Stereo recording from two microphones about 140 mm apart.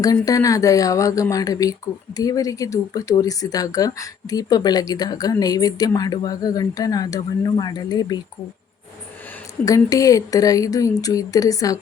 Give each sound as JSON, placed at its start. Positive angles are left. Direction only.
{"t": 0.0, "sound": "speech", "side_deg": 25}
{"t": 9.6, "sound": "speech", "side_deg": 25}